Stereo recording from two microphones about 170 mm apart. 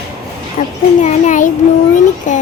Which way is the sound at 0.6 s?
50° left (ahead or behind).